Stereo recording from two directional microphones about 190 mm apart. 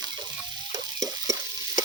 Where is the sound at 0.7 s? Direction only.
20° right (ahead or behind).